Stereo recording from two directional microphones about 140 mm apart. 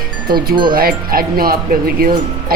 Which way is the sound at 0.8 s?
90° right.